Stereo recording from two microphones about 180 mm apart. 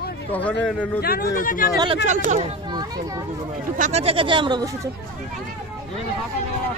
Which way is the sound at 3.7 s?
40° right (ahead or behind).